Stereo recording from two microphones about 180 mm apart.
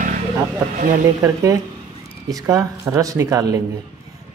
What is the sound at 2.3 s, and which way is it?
Speech, 20° right (ahead or behind).